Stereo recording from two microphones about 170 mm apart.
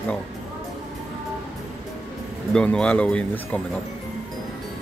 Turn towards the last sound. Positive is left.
turn(degrees=10)  # may be behind; listen again after turning